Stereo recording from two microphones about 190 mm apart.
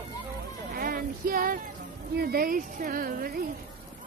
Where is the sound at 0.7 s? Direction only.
50° right (ahead or behind).